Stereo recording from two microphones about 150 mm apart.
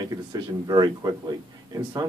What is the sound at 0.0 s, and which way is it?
Speech, 25° right (ahead or behind).